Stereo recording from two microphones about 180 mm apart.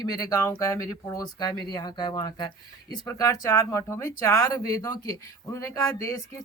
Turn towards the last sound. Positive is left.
turn(degrees=15)  # may be behind; listen again after turning